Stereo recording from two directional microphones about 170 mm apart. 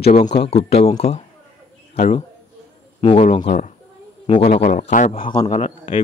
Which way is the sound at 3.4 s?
50° left (ahead or behind).